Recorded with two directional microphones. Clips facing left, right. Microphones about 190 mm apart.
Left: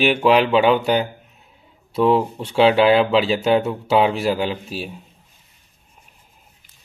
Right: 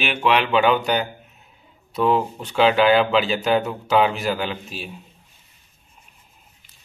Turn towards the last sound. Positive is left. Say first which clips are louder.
# left 4 dB
turn(degrees=35)  # may be behind; listen again after turning